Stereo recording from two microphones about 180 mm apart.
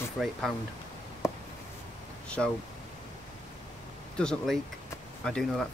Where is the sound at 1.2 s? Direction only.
15° left (ahead or behind).